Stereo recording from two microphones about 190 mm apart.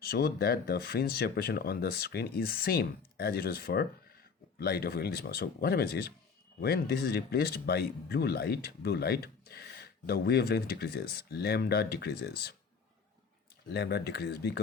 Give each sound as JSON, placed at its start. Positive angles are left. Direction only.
{"t": 0.0, "sound": "speech", "side_deg": 55}
{"t": 13.7, "sound": "speech", "side_deg": 60}